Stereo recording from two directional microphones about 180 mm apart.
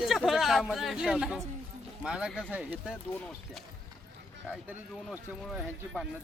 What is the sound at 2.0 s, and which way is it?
Speech, 5° right (ahead or behind).